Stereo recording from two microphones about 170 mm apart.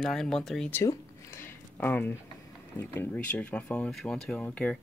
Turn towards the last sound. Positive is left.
turn(degrees=10)  # may be behind; listen again after turning